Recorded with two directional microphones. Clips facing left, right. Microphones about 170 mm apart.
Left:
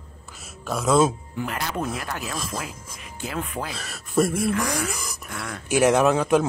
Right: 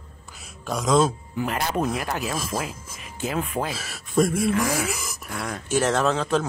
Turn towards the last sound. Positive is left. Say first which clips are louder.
# left 4 dB
turn(degrees=15)  # may be behind; listen again after turning